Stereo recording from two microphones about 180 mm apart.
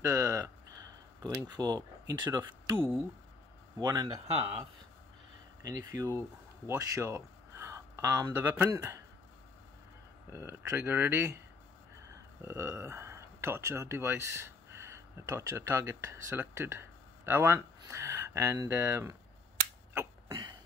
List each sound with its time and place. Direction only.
0.0 s a sound: 15° right (ahead or behind)
2.8 s speech: 10° right (ahead or behind)
5.6 s speech: 20° right (ahead or behind)
10.3 s speech: 15° right (ahead or behind)
12.4 s speech: 15° right (ahead or behind)
20.2 s cough: 25° right (ahead or behind)